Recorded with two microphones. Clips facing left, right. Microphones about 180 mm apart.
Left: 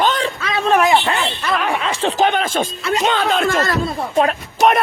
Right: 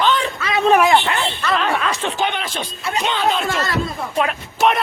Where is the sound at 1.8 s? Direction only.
30° left (ahead or behind); by 3.7 s 50° left (ahead or behind).